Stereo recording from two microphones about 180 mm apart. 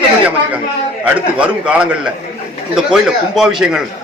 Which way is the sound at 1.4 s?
5° right (ahead or behind).